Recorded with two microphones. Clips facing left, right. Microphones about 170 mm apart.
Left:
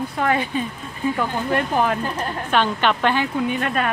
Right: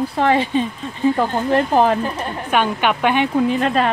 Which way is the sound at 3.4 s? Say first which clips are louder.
Right 5 dB; 30° right (ahead or behind).